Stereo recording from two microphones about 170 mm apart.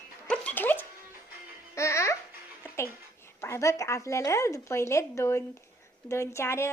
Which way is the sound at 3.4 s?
15° left (ahead or behind).